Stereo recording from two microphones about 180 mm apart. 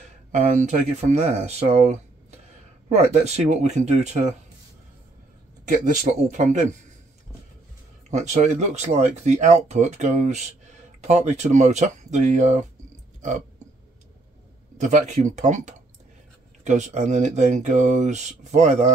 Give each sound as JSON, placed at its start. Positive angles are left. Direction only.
{"t": 0.3, "sound": "speech", "side_deg": -45}
{"t": 6.3, "sound": "a man's voice", "side_deg": -45}
{"t": 8.1, "sound": "speech", "side_deg": -40}
{"t": 14.8, "sound": "speech", "side_deg": -40}